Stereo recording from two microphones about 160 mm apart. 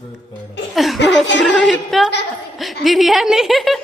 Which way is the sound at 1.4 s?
Centre (ahead or behind).